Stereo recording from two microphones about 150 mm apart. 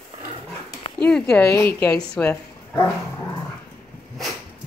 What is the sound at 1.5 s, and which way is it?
Speech, 20° left (ahead or behind).